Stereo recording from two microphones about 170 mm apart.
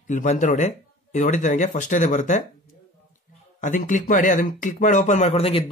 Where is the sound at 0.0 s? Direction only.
45° left (ahead or behind).